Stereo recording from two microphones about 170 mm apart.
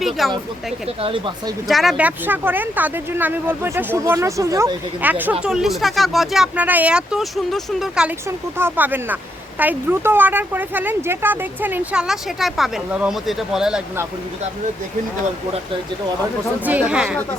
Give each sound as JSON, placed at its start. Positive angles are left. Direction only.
{"t": 0.0, "sound": "speech", "side_deg": 0}
{"t": 1.0, "sound": "speech", "side_deg": -30}
{"t": 1.6, "sound": "speech", "side_deg": 0}
{"t": 16.6, "sound": "speech", "side_deg": -5}